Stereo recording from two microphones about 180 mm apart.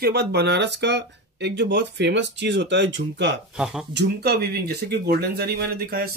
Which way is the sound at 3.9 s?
65° right (ahead or behind).